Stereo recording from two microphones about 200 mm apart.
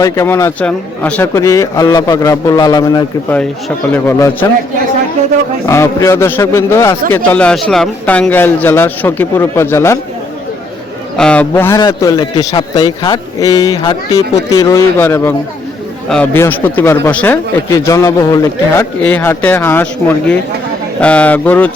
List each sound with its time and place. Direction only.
0.0 s a man's voice: 15° left (ahead or behind)
5.6 s a man's voice: 15° left (ahead or behind)
11.2 s a man's voice: 5° left (ahead or behind)